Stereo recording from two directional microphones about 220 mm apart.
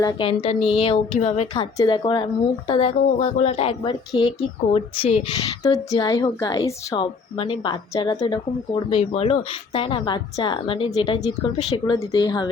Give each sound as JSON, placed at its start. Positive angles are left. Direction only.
{"t": 0.0, "sound": "a woman's voice", "side_deg": 20}
{"t": 5.6, "sound": "a woman's voice", "side_deg": 15}